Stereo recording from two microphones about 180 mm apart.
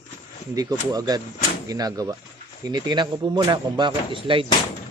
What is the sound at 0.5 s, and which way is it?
Speech, 20° right (ahead or behind).